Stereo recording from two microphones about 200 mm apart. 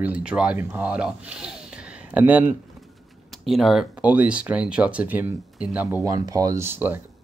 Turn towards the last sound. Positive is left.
turn(degrees=-10)  # may be behind; listen again after turning